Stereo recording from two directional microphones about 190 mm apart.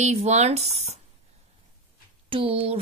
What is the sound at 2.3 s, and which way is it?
Speech, 30° right (ahead or behind).